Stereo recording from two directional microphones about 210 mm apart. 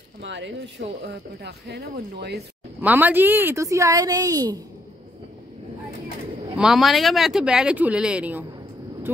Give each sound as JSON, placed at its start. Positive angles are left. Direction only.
{"t": 0.2, "sound": "speech", "side_deg": -60}
{"t": 2.8, "sound": "a woman's voice", "side_deg": -10}
{"t": 6.5, "sound": "speech", "side_deg": -5}